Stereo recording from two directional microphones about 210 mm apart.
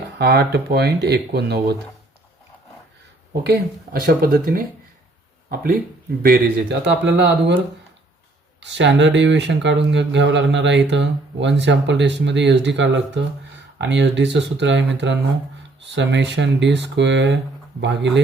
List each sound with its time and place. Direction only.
0.2 s speech: 50° right (ahead or behind)
3.9 s speech: 45° right (ahead or behind)
8.6 s speech: 55° right (ahead or behind)